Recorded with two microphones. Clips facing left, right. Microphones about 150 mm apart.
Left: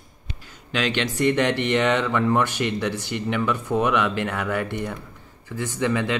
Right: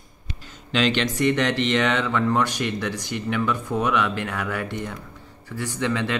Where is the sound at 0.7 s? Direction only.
10° left (ahead or behind).